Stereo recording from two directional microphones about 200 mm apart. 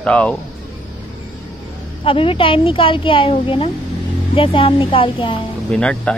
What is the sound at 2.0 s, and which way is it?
A woman's voice, 25° left (ahead or behind).